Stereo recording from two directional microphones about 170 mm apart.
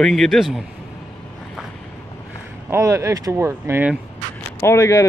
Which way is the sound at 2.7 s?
15° right (ahead or behind).